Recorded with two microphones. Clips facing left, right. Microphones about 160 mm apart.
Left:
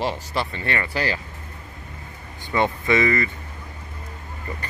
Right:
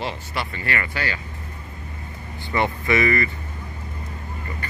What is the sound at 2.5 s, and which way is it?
Speech, 20° left (ahead or behind).